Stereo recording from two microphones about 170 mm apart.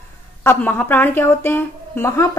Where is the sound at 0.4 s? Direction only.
15° left (ahead or behind).